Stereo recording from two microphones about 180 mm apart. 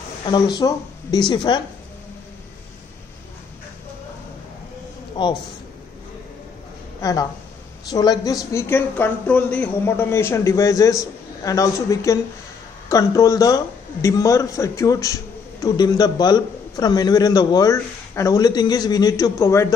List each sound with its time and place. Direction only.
0.2 s a man's voice: 25° left (ahead or behind)
5.2 s speech: 25° left (ahead or behind)
7.0 s a man's voice: 20° left (ahead or behind)